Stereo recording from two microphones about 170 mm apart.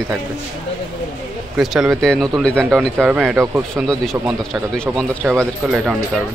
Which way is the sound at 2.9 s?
10° right (ahead or behind).